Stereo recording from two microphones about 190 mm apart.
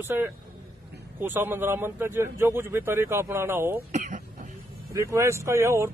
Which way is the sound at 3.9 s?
40° right (ahead or behind).